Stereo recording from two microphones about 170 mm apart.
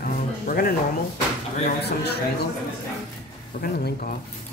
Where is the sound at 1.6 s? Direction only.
75° left (ahead or behind).